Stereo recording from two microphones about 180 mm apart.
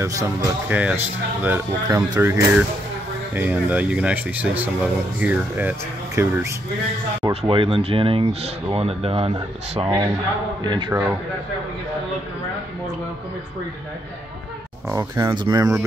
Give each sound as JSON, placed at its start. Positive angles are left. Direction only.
{"t": 0.0, "sound": "speech", "side_deg": -15}
{"t": 7.2, "sound": "speech", "side_deg": -30}
{"t": 10.9, "sound": "speech", "side_deg": -10}
{"t": 14.9, "sound": "speech", "side_deg": -15}